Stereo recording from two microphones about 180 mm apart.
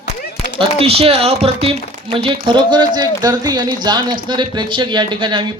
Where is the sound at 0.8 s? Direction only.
35° right (ahead or behind).